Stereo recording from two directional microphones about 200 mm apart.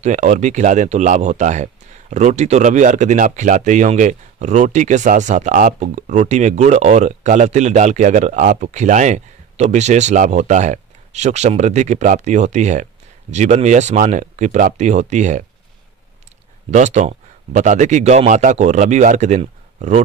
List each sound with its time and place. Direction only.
0.0 s speech: 35° right (ahead or behind)
16.7 s speech: 35° right (ahead or behind)